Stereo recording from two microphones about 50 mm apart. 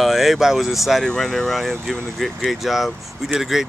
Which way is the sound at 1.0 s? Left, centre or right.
Centre.